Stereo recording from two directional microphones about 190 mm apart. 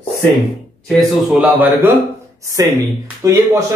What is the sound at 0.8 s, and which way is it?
Speech, 5° right (ahead or behind).